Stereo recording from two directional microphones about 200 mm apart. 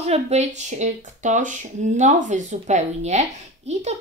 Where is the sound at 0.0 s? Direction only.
35° right (ahead or behind).